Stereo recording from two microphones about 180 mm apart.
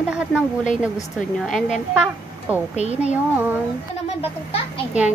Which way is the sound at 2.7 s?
35° right (ahead or behind).